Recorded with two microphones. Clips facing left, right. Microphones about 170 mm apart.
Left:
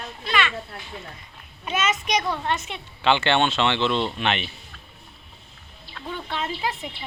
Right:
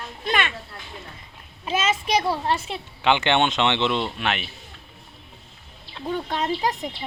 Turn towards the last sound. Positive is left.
turn(degrees=-40)  # may be behind; listen again after turning